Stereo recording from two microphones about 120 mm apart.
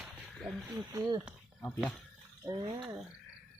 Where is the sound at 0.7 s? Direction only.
30° right (ahead or behind).